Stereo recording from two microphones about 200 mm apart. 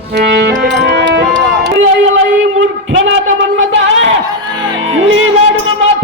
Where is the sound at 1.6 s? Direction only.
75° right (ahead or behind).